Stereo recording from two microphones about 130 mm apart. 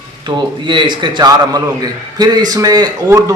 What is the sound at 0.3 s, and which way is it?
A man's voice, 35° right (ahead or behind).